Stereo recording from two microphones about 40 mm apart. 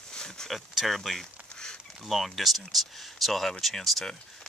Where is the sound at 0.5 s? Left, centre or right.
Centre.